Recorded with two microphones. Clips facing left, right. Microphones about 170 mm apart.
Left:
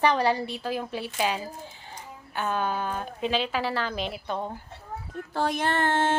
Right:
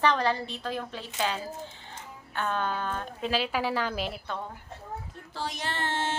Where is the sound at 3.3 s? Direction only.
5° right (ahead or behind).